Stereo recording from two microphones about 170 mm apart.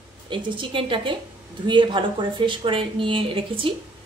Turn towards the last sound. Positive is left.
turn(degrees=-30)  # may be behind; listen again after turning